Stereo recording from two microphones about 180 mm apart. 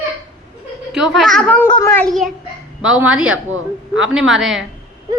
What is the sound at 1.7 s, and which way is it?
Speech, 20° left (ahead or behind).